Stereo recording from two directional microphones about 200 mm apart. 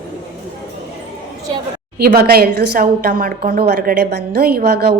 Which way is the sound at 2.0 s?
50° right (ahead or behind).